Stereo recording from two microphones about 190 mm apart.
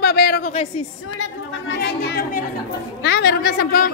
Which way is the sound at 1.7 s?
65° left (ahead or behind).